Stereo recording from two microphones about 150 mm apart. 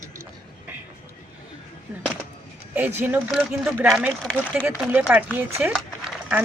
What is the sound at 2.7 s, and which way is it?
Speech, 10° right (ahead or behind).